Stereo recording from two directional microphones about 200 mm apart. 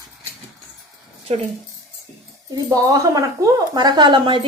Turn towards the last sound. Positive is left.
turn(degrees=-20)  # may be behind; listen again after turning